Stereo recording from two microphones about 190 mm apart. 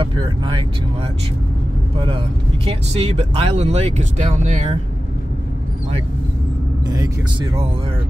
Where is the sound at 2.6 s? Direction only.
30° right (ahead or behind).